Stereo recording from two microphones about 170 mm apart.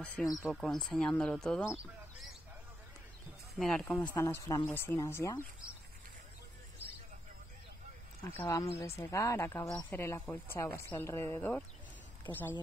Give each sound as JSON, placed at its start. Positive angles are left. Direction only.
{"t": 0.0, "sound": "speech", "side_deg": 5}
{"t": 3.5, "sound": "speech", "side_deg": 0}
{"t": 8.4, "sound": "speech", "side_deg": 15}